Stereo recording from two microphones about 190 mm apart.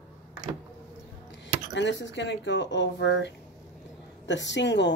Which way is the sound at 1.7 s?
70° left (ahead or behind).